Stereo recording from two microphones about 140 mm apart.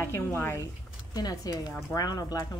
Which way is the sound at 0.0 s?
15° left (ahead or behind).